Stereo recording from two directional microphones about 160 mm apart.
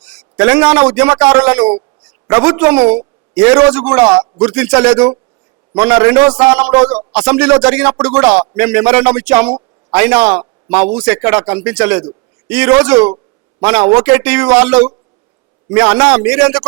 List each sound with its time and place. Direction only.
0.0 s a man's voice: 5° right (ahead or behind)